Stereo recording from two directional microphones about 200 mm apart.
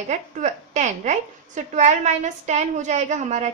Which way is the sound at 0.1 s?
35° right (ahead or behind).